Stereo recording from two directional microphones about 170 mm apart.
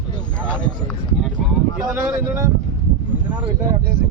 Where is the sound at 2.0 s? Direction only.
15° right (ahead or behind).